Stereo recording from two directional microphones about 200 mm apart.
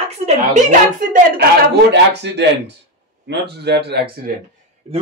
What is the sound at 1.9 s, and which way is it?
Speech, 60° right (ahead or behind).